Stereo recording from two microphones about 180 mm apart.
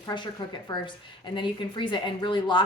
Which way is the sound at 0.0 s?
25° left (ahead or behind).